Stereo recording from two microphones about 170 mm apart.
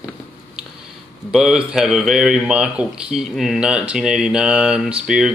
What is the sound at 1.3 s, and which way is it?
A man's voice, centre (ahead or behind).